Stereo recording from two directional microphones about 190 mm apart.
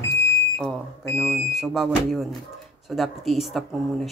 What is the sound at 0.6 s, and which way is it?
Speech, centre (ahead or behind).